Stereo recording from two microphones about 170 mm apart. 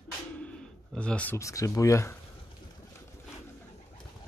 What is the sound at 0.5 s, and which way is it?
Speech, 5° left (ahead or behind).